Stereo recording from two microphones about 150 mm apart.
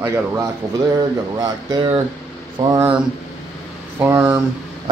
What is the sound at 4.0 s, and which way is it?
Speech, 15° right (ahead or behind).